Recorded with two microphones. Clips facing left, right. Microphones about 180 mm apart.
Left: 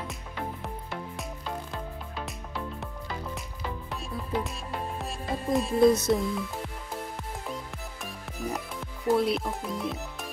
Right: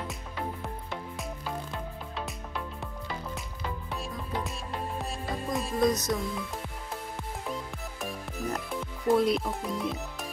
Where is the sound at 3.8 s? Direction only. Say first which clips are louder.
Left 1 dB; centre (ahead or behind).